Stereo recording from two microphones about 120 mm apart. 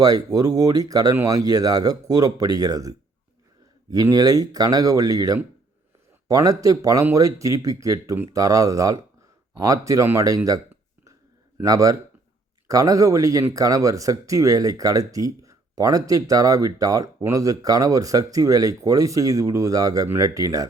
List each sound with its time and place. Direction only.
0.0 s speech: 30° right (ahead or behind)
11.6 s speech: 30° right (ahead or behind)